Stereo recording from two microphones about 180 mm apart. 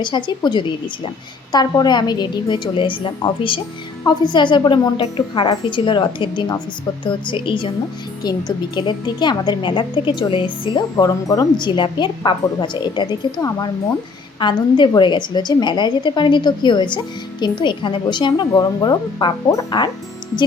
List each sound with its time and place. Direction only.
0.0 s a woman's voice: 25° left (ahead or behind)